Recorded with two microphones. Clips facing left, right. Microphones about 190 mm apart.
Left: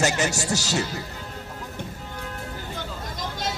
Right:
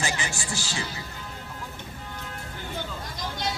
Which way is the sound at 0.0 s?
40° left (ahead or behind).